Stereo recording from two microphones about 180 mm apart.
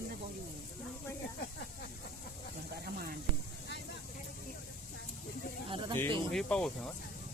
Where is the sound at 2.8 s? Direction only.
60° right (ahead or behind).